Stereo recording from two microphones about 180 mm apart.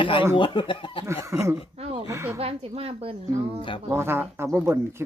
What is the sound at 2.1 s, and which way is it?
Speech, 15° right (ahead or behind).